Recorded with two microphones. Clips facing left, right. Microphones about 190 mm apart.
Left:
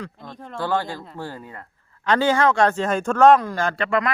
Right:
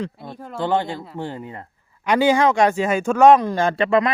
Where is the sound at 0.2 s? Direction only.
10° right (ahead or behind).